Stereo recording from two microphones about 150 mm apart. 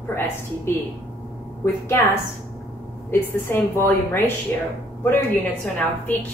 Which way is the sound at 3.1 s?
15° left (ahead or behind).